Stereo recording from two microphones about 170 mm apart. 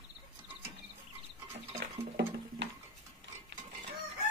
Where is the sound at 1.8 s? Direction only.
90° right.